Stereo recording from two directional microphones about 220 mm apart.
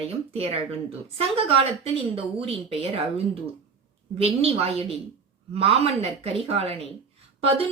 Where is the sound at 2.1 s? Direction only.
25° right (ahead or behind).